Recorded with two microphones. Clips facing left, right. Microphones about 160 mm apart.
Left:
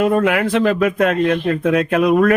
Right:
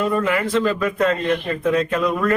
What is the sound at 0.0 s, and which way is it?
A man's voice, 60° left (ahead or behind).